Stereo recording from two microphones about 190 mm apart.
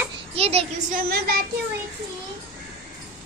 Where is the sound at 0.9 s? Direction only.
55° right (ahead or behind).